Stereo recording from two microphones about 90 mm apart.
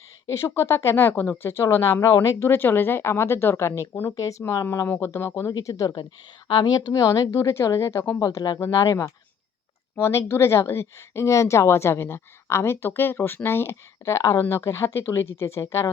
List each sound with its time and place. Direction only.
0.3 s speech: 30° left (ahead or behind)
4.1 s speech: 40° left (ahead or behind)
5.5 s speech: 40° left (ahead or behind)
6.5 s speech: 50° left (ahead or behind); by 8.2 s 25° left (ahead or behind)
8.2 s speech: 40° left (ahead or behind)